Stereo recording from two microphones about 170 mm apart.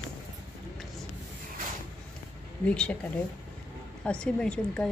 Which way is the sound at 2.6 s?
5° left (ahead or behind).